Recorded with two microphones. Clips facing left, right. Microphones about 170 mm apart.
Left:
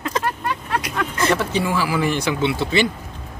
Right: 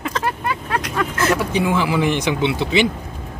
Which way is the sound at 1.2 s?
5° right (ahead or behind).